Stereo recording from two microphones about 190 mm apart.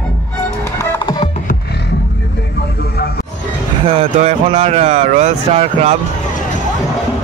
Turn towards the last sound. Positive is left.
turn(degrees=-35)  # may be behind; listen again after turning